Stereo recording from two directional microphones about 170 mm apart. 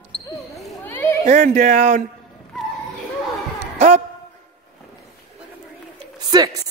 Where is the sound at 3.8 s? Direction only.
40° right (ahead or behind).